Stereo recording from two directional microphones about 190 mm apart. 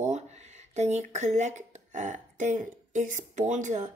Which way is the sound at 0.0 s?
35° right (ahead or behind).